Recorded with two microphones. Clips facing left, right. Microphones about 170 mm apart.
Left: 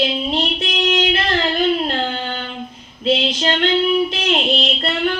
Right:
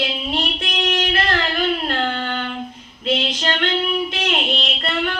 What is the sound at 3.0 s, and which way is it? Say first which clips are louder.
Female singing: left 4 dB; 30° left (ahead or behind).